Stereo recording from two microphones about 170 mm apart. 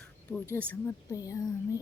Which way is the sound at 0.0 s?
5° left (ahead or behind).